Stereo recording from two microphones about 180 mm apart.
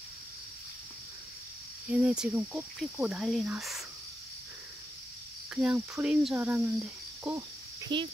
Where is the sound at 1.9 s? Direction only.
5° right (ahead or behind).